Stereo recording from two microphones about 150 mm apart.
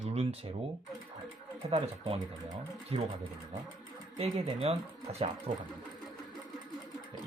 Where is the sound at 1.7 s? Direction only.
40° right (ahead or behind).